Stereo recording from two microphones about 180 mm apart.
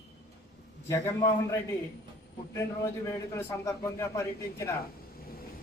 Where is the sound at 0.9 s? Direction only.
15° left (ahead or behind).